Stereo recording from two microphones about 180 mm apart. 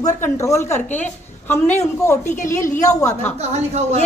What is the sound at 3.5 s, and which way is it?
Speech, 35° right (ahead or behind).